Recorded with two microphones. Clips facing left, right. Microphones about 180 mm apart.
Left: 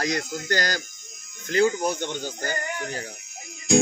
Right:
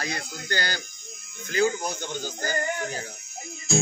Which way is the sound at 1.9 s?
65° left (ahead or behind).